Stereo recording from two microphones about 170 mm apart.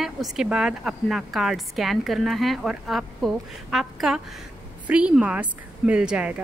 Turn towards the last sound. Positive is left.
turn(degrees=-10)  # may be behind; listen again after turning